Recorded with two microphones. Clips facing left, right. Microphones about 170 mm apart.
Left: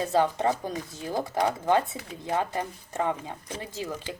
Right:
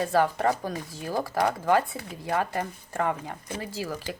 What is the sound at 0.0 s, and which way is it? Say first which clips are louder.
Speech: right 1 dB; 20° left (ahead or behind).